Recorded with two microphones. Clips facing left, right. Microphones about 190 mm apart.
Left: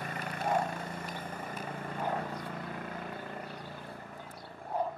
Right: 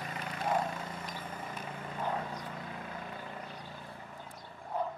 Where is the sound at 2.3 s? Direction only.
55° left (ahead or behind).